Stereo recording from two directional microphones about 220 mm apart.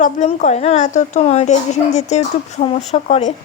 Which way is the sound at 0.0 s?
30° left (ahead or behind).